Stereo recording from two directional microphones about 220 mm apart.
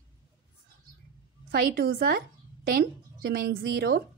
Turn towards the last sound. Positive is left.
turn(degrees=-45)  # may be behind; listen again after turning